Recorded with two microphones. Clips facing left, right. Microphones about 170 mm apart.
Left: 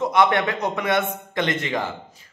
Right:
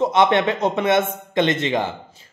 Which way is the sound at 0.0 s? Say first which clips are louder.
Right 3 dB; 25° right (ahead or behind).